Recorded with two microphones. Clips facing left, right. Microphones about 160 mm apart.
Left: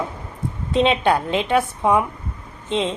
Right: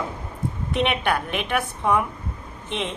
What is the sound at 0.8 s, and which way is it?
Speech, 20° left (ahead or behind).